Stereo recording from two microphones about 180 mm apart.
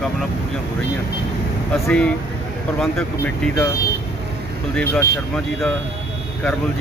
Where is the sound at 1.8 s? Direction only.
5° left (ahead or behind).